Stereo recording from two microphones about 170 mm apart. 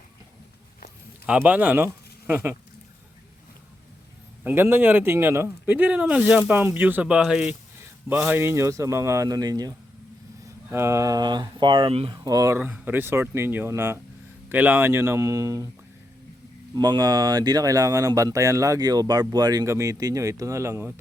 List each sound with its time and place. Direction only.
1.3 s speech: 10° right (ahead or behind)
4.4 s speech: 15° right (ahead or behind)
16.7 s speech: 25° right (ahead or behind)